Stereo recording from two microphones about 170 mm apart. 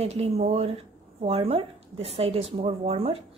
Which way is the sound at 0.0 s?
40° right (ahead or behind).